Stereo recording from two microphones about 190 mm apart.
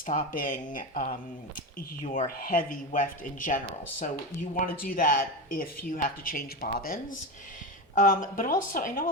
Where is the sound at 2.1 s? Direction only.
45° left (ahead or behind).